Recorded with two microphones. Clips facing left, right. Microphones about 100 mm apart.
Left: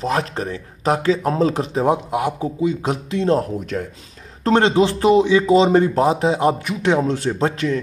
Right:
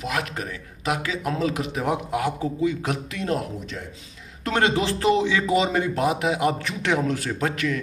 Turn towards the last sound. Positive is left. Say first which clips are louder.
# left 5 dB
turn(degrees=30)  # may be behind; listen again after turning